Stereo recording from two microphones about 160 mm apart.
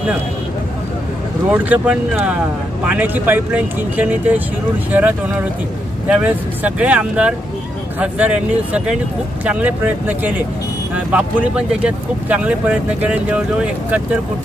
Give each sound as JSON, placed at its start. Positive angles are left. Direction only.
{"t": 1.5, "sound": "speech", "side_deg": -10}